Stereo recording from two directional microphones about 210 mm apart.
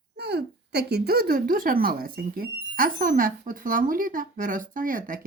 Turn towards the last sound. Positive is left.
turn(degrees=-40)  # may be behind; listen again after turning